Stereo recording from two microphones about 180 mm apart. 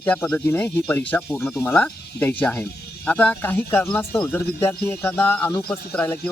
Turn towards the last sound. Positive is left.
turn(degrees=10)  # may be behind; listen again after turning